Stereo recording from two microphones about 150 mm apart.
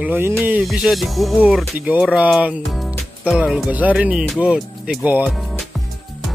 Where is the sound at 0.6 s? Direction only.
Centre (ahead or behind).